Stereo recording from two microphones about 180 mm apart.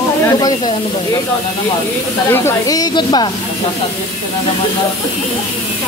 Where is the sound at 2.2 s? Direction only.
15° left (ahead or behind).